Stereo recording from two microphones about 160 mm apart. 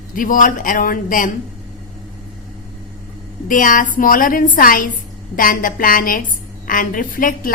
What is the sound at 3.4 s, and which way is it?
A woman's voice, 55° left (ahead or behind).